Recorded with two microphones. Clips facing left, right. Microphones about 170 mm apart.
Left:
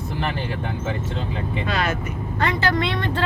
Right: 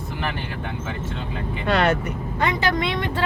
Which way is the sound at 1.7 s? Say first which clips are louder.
Right 6 dB; 65° right (ahead or behind).